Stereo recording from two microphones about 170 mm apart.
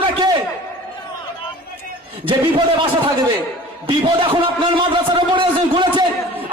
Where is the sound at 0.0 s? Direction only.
25° right (ahead or behind).